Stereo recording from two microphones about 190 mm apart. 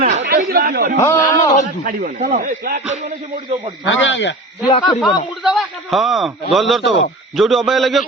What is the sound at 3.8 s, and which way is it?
Speech, 75° left (ahead or behind).